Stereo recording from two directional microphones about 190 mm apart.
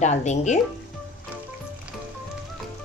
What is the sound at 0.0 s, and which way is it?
Speech, 40° left (ahead or behind).